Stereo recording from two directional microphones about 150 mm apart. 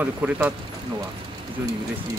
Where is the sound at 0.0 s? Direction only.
10° right (ahead or behind).